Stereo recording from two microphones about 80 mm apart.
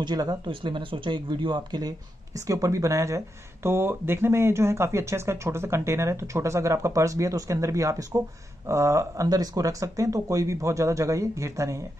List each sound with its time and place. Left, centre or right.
0.0 s speech: right
0.5 s speech: right